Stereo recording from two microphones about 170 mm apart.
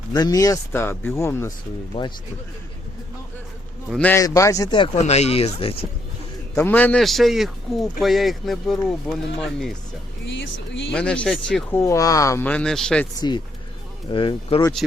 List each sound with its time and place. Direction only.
0.1 s speech: 20° left (ahead or behind)
2.0 s speech: 35° left (ahead or behind)
3.8 s speech: 5° left (ahead or behind); by 4.9 s 25° left (ahead or behind)
4.9 s speech: 40° left (ahead or behind)
6.6 s speech: 10° left (ahead or behind)
10.2 s speech: 90° left
10.9 s speech: 5° left (ahead or behind)
11.7 s speech: 15° left (ahead or behind)
13.1 s speech: 25° left (ahead or behind)